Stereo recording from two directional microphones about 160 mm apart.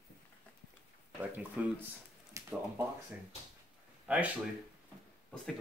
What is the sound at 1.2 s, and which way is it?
Speech, 15° right (ahead or behind).